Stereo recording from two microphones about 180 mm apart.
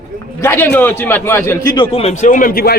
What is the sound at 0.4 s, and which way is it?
A man's voice, 10° left (ahead or behind).